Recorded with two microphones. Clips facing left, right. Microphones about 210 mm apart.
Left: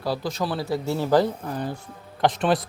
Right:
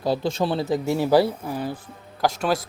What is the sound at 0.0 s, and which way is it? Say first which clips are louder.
Speech: right 4 dB; 25° right (ahead or behind).